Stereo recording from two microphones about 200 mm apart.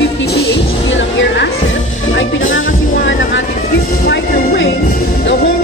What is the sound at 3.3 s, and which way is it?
Music, 55° left (ahead or behind).